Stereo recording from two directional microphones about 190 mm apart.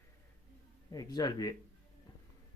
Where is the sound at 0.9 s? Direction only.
20° left (ahead or behind).